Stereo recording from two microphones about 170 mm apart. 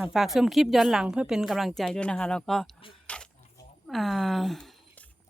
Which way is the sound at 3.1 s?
5° left (ahead or behind).